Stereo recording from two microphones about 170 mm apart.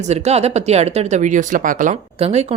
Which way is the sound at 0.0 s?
40° right (ahead or behind).